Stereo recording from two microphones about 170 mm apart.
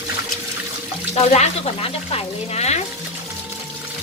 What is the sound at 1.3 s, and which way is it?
Speech, 40° left (ahead or behind).